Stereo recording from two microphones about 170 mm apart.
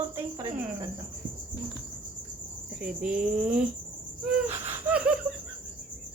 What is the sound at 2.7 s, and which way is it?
Speech, 5° right (ahead or behind).